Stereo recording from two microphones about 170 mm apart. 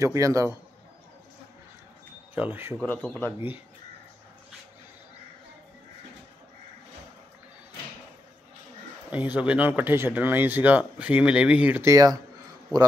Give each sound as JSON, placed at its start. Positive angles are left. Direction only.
{"t": 0.0, "sound": "a man's voice", "side_deg": -20}
{"t": 2.3, "sound": "speech", "side_deg": -10}
{"t": 2.8, "sound": "speech", "side_deg": 5}
{"t": 9.1, "sound": "speech", "side_deg": -10}